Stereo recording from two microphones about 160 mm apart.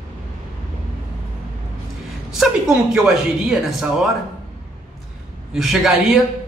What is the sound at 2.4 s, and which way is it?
Speech, 5° right (ahead or behind).